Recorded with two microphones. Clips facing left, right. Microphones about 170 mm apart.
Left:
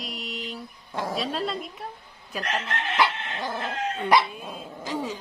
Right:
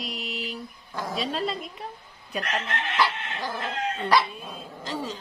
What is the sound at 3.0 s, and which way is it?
Dog, 25° left (ahead or behind).